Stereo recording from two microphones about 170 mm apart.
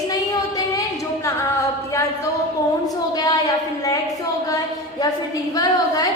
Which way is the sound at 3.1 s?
20° left (ahead or behind).